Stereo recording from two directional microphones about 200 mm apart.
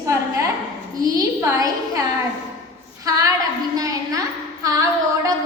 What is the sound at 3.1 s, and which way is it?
A woman's voice, 15° right (ahead or behind).